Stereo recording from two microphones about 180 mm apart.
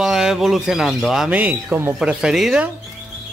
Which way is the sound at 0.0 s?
Centre (ahead or behind).